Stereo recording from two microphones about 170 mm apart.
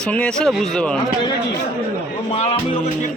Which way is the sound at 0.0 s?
5° left (ahead or behind).